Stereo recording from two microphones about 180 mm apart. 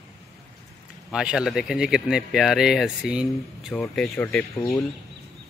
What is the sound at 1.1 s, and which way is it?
Speech, 5° right (ahead or behind).